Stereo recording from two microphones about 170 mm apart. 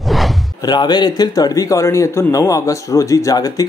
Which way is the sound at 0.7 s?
25° left (ahead or behind).